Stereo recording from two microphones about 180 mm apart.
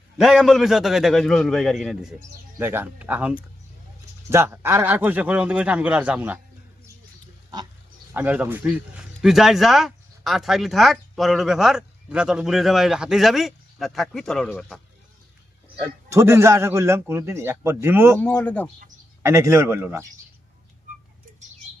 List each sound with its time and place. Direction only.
0.2 s speech: centre (ahead or behind)
2.6 s a man's voice: 10° right (ahead or behind)
8.1 s speech: 10° right (ahead or behind)
15.8 s a man's voice: 15° right (ahead or behind)
18.2 s speech: 10° left (ahead or behind)
19.2 s a man's voice: 15° right (ahead or behind)